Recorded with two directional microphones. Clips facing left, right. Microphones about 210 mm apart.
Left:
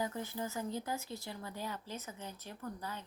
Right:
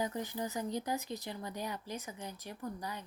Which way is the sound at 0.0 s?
15° right (ahead or behind).